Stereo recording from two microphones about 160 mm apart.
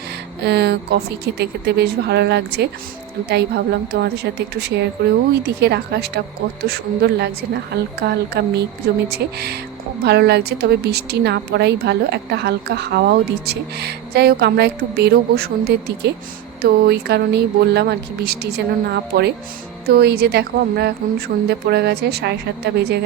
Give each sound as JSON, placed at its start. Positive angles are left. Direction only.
{"t": 0.4, "sound": "speech", "side_deg": -90}